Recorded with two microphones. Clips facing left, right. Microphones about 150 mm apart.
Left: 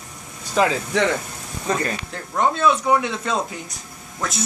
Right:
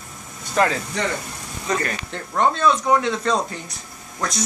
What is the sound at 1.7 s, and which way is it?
Speech, 25° left (ahead or behind).